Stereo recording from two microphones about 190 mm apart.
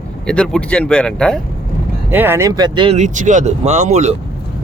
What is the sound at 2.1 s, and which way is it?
Speech, 10° right (ahead or behind).